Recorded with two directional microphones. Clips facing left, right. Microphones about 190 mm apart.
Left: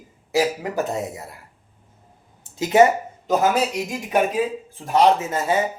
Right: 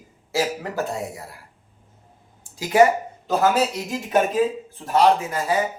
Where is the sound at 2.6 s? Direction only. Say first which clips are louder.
Left 1 dB; 25° left (ahead or behind).